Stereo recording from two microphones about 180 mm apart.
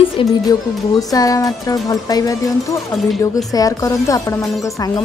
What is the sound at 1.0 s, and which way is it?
Speech, 20° left (ahead or behind).